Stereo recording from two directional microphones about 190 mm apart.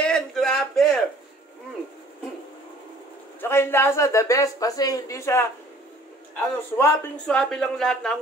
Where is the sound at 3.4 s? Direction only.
15° left (ahead or behind).